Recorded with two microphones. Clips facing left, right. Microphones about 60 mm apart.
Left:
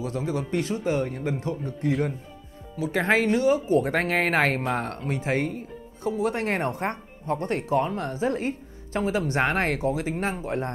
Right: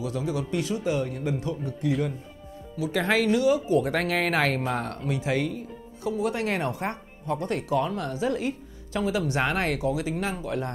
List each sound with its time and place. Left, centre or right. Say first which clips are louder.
0.0 s speech: left 1 dB; left